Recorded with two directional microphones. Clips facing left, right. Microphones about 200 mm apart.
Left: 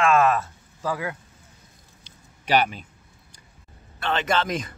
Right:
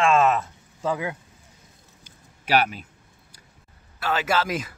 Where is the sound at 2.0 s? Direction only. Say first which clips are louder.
Left 1 dB; 5° right (ahead or behind).